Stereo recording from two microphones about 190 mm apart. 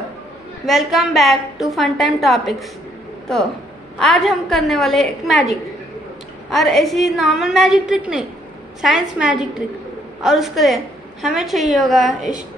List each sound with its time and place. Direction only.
0.7 s a woman's voice: centre (ahead or behind)
4.0 s a woman's voice: centre (ahead or behind)
12.2 s a sound: 40° right (ahead or behind)